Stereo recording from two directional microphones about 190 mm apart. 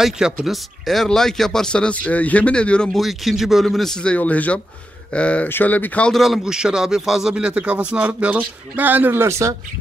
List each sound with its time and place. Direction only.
0.0 s speech: centre (ahead or behind)